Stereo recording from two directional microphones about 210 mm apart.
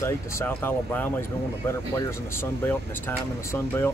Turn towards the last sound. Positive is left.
turn(degrees=10)  # may be behind; listen again after turning